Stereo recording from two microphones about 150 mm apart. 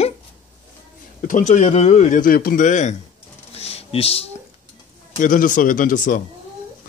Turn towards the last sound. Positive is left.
turn(degrees=65)  # may be behind; listen again after turning